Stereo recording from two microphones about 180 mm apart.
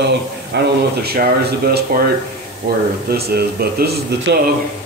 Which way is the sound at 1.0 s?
60° right (ahead or behind).